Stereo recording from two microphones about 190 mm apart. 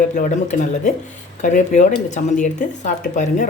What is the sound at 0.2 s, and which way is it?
Speech, 40° left (ahead or behind).